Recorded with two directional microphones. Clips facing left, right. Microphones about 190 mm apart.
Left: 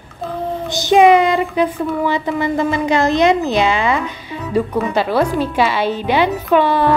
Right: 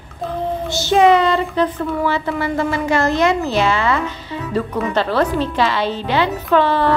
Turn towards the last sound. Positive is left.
turn(degrees=15)  # may be behind; listen again after turning